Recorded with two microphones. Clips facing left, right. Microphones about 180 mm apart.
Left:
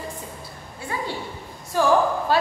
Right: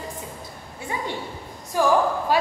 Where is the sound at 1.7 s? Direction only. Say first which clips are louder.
Left 1 dB; 15° right (ahead or behind).